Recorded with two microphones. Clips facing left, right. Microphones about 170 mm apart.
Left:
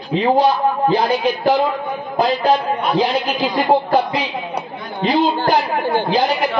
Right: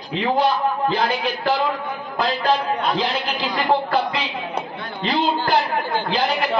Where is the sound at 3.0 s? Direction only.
45° left (ahead or behind).